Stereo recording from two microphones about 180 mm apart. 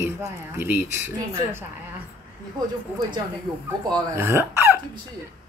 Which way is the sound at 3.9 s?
15° right (ahead or behind).